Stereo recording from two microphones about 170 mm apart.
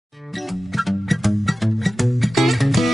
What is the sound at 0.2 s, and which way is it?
Music, centre (ahead or behind).